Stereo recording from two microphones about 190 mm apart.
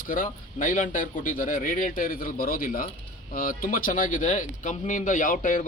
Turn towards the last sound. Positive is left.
turn(degrees=45)  # may be behind; listen again after turning